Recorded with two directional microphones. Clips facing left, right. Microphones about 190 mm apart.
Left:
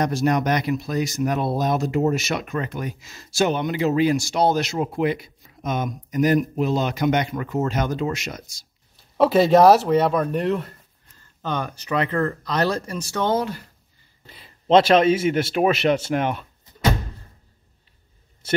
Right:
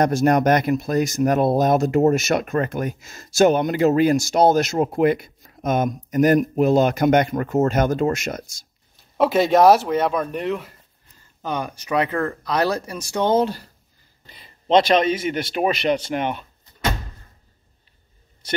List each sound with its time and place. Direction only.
0.0 s speech: 50° right (ahead or behind)
9.1 s speech: centre (ahead or behind); by 13.7 s 30° right (ahead or behind)
14.2 s speech: 5° left (ahead or behind)